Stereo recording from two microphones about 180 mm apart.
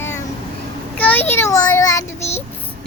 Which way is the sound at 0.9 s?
10° left (ahead or behind).